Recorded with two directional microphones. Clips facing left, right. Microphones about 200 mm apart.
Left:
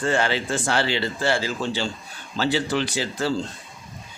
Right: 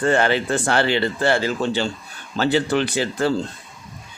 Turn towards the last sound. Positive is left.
turn(degrees=-55)  # may be behind; listen again after turning